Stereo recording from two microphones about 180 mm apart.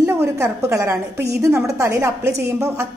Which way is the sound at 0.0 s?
15° right (ahead or behind).